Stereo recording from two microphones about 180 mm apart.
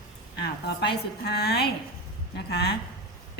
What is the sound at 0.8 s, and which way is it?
A woman's voice, 65° left (ahead or behind).